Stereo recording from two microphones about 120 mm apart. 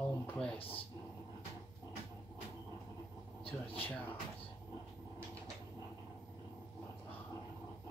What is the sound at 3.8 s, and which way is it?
Speech, 15° left (ahead or behind).